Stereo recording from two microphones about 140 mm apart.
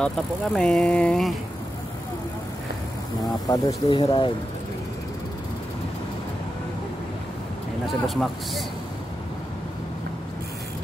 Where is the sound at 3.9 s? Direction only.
35° left (ahead or behind).